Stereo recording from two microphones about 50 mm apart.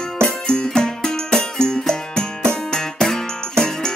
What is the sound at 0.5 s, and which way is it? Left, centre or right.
Music, centre.